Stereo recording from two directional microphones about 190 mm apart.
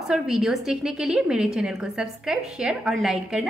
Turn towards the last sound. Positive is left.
turn(degrees=-5)  # may be behind; listen again after turning